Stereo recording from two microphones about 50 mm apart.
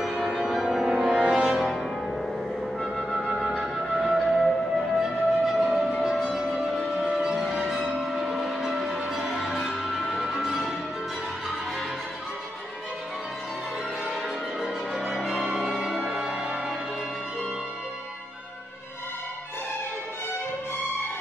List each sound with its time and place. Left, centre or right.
0.0 s music: centre
2.8 s music: centre
3.3 s music: centre
14.6 s change ringing: centre
15.4 s music: centre
16.1 s music: centre